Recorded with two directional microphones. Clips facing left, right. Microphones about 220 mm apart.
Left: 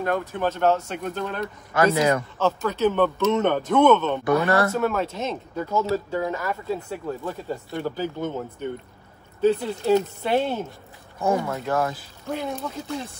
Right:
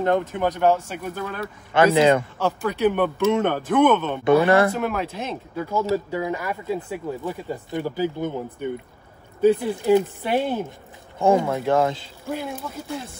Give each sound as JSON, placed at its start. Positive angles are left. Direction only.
{"t": 0.0, "sound": "speech", "side_deg": -20}
{"t": 1.7, "sound": "speech", "side_deg": -25}
{"t": 2.3, "sound": "speech", "side_deg": -15}
{"t": 11.1, "sound": "speech", "side_deg": -30}